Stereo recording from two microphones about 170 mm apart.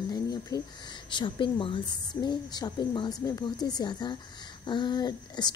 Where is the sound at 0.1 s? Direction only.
20° left (ahead or behind).